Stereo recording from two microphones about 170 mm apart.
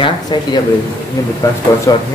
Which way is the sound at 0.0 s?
25° left (ahead or behind).